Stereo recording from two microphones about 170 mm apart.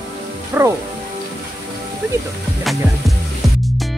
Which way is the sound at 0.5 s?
15° right (ahead or behind).